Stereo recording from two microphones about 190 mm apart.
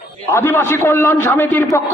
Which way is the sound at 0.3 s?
10° left (ahead or behind).